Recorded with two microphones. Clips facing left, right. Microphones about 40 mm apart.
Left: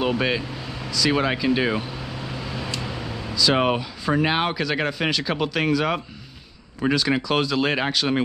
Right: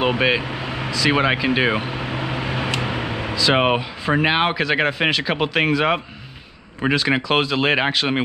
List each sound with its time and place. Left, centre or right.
0.0 s speech: right
0.7 s air conditioning: right
3.3 s speech: right